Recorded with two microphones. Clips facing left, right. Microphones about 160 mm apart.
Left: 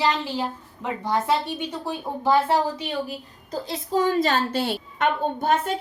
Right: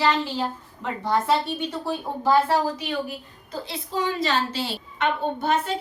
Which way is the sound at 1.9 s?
15° left (ahead or behind).